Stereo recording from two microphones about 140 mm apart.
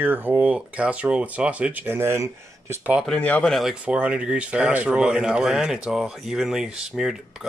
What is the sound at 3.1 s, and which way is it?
Speech, 10° left (ahead or behind).